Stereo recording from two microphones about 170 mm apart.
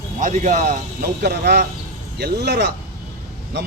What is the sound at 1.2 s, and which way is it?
A man's voice, 75° right (ahead or behind).